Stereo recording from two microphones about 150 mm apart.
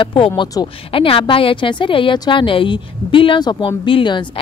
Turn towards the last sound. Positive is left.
turn(degrees=35)  # may be behind; listen again after turning